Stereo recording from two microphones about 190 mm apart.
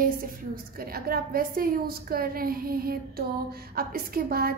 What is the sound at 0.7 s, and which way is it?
A woman's voice, 50° right (ahead or behind).